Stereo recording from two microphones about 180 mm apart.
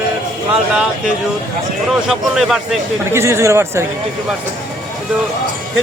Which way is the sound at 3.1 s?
15° right (ahead or behind).